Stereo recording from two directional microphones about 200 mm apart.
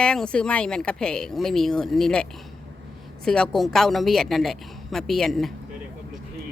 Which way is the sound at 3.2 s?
5° left (ahead or behind).